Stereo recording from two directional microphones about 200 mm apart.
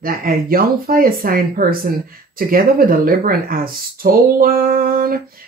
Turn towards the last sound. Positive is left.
turn(degrees=-45)  # may be behind; listen again after turning